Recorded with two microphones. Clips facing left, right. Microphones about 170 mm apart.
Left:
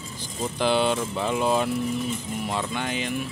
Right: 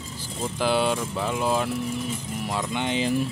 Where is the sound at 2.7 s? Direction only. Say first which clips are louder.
Right 4 dB; 20° right (ahead or behind).